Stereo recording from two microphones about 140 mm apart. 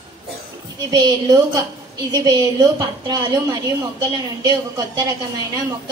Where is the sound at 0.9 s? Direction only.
30° right (ahead or behind).